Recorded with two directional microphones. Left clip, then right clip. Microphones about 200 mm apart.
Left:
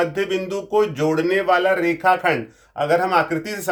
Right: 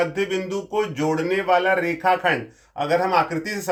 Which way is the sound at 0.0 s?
45° left (ahead or behind).